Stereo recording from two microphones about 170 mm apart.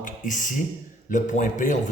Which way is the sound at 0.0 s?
50° left (ahead or behind).